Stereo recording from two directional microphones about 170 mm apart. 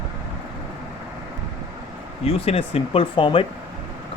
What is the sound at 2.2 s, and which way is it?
Speech, 35° left (ahead or behind).